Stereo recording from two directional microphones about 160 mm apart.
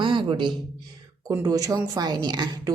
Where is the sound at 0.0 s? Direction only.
30° right (ahead or behind).